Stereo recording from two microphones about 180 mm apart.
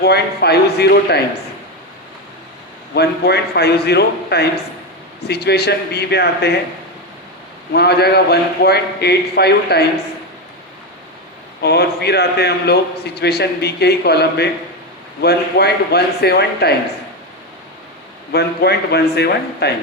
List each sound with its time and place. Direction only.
0.0 s a man's voice: 65° left (ahead or behind)
2.9 s a man's voice: 65° left (ahead or behind)
7.7 s a man's voice: 65° left (ahead or behind)
11.6 s a man's voice: 65° left (ahead or behind)
18.3 s a man's voice: 65° left (ahead or behind)